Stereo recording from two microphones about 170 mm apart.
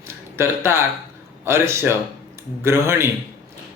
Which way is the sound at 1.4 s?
15° right (ahead or behind).